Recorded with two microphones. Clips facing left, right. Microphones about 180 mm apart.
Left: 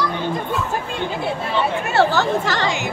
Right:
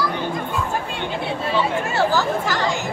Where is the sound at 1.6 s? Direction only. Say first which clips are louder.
Left 5 dB; 65° left (ahead or behind).